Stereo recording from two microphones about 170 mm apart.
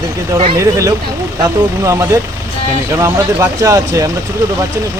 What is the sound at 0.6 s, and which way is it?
Speech, 20° right (ahead or behind).